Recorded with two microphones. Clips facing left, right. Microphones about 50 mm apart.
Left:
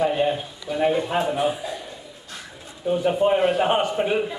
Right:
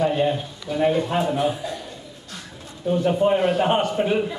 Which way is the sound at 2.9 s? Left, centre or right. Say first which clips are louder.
Even; centre.